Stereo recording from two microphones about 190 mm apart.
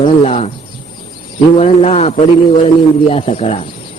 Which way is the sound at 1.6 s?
35° left (ahead or behind).